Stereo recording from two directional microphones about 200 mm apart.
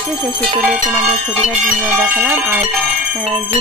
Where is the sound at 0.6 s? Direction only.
5° right (ahead or behind).